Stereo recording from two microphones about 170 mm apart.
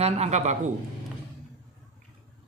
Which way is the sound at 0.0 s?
40° right (ahead or behind).